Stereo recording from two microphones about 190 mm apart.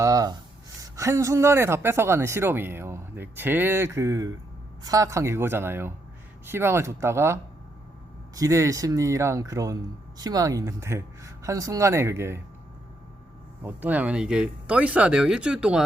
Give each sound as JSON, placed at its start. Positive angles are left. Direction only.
{"t": 0.0, "sound": "a sound", "side_deg": -20}
{"t": 0.8, "sound": "speech", "side_deg": -15}
{"t": 8.4, "sound": "speech", "side_deg": -15}
{"t": 13.6, "sound": "speech", "side_deg": -10}